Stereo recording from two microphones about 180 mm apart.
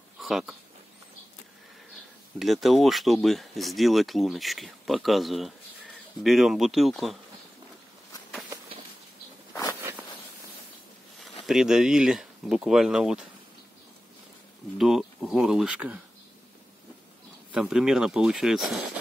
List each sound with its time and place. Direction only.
0.2 s speech: 5° right (ahead or behind)
2.3 s speech: centre (ahead or behind)
9.5 s a sound: 15° left (ahead or behind)
9.8 s zipper: 15° right (ahead or behind)
11.1 s speech: centre (ahead or behind)
14.8 s speech: centre (ahead or behind)
17.5 s speech: 5° right (ahead or behind)